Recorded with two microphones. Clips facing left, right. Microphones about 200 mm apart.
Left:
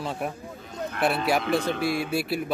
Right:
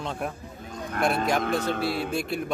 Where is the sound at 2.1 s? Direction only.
5° left (ahead or behind).